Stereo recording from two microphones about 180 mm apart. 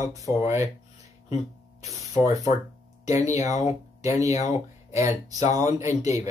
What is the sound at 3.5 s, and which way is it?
Speech, 40° left (ahead or behind).